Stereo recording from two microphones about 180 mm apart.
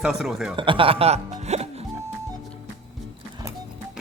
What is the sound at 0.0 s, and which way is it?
Speech, 5° right (ahead or behind).